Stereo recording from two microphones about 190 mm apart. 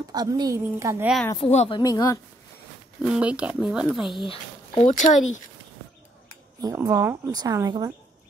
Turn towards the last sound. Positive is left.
turn(degrees=-20)  # may be behind; listen again after turning